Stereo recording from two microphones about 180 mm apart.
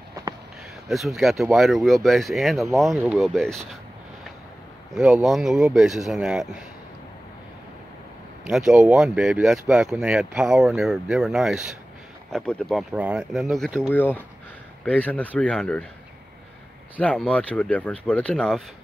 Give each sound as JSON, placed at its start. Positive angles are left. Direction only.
{"t": 0.8, "sound": "speech", "side_deg": 0}
{"t": 4.9, "sound": "speech", "side_deg": -5}
{"t": 8.5, "sound": "speech", "side_deg": -5}
{"t": 16.9, "sound": "speech", "side_deg": 5}